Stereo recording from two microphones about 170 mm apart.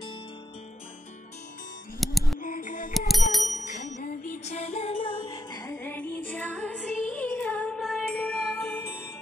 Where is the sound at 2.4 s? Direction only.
50° left (ahead or behind).